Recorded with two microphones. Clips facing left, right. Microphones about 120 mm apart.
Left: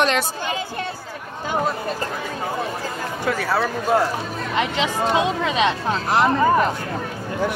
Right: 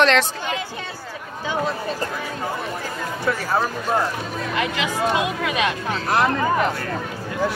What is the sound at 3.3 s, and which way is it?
Speech, 70° left (ahead or behind).